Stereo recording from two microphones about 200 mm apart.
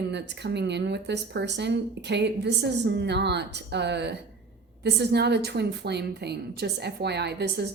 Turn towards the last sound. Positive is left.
turn(degrees=-55)  # may be behind; listen again after turning